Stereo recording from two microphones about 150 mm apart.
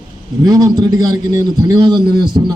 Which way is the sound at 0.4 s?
25° right (ahead or behind).